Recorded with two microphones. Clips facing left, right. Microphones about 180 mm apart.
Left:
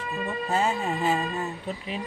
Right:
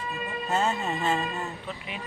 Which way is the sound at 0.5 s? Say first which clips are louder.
Left 1 dB; 5° left (ahead or behind).